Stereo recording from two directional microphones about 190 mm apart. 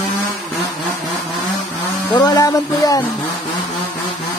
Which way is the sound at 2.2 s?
20° left (ahead or behind).